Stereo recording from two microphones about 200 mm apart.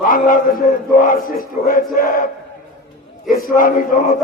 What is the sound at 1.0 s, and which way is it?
A man's voice, 45° left (ahead or behind).